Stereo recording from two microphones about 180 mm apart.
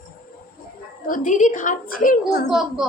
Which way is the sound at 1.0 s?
45° left (ahead or behind).